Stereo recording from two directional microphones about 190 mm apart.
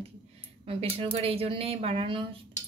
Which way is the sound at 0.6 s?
30° right (ahead or behind).